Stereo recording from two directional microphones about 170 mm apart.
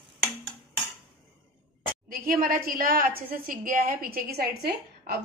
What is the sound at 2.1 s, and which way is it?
A woman's voice, 55° right (ahead or behind).